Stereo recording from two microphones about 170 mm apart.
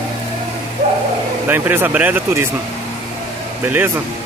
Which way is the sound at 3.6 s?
10° right (ahead or behind).